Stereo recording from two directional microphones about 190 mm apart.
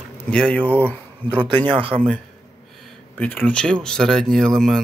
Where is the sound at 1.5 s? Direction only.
25° right (ahead or behind).